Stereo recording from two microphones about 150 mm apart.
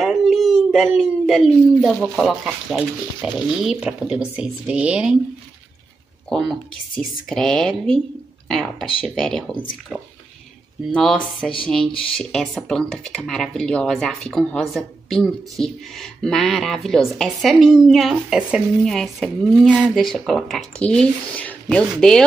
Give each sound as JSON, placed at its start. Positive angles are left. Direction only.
{"t": 0.0, "sound": "a sound", "side_deg": 0}
{"t": 0.7, "sound": "speech", "side_deg": 0}
{"t": 6.2, "sound": "speech", "side_deg": 0}